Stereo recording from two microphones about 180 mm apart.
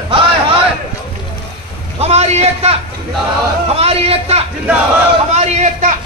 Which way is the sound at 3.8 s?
35° right (ahead or behind).